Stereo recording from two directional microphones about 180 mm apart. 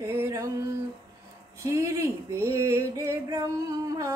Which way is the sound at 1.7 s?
15° right (ahead or behind).